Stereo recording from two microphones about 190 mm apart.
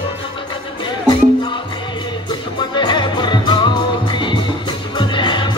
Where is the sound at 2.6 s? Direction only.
25° left (ahead or behind).